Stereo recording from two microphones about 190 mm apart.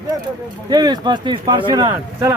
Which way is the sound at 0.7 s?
20° right (ahead or behind).